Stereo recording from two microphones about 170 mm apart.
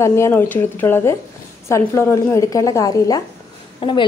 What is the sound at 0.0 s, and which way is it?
A woman's voice, 15° left (ahead or behind).